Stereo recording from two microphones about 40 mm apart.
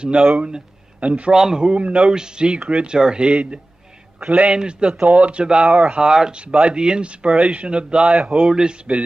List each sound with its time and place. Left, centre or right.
0.0 s a man's voice: right
1.3 s a man's voice: centre
1.7 s speech: right
4.3 s a man's voice: right